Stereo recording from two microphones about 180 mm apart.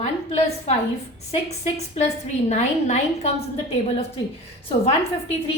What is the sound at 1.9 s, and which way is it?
A woman's voice, 40° left (ahead or behind).